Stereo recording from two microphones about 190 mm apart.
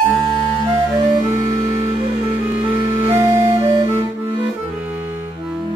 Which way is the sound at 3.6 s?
20° right (ahead or behind).